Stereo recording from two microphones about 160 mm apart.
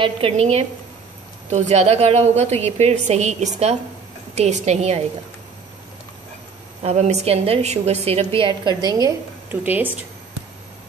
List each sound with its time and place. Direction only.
0.0 s a woman's voice: 40° right (ahead or behind)
6.8 s a woman's voice: 45° right (ahead or behind); by 9.6 s 20° right (ahead or behind)
9.6 s speech: 10° right (ahead or behind)